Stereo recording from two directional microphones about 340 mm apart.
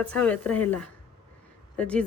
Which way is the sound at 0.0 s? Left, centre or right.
Centre.